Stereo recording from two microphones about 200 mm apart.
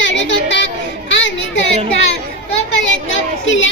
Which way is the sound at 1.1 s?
65° left (ahead or behind).